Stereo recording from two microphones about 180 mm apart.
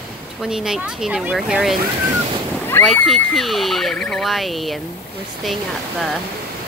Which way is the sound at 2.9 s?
Centre (ahead or behind).